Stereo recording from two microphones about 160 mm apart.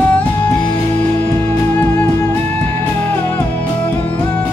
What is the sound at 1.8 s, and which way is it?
Music, 15° left (ahead or behind).